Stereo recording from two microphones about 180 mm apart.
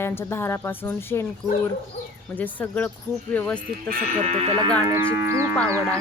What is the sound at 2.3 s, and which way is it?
Speech, 10° left (ahead or behind).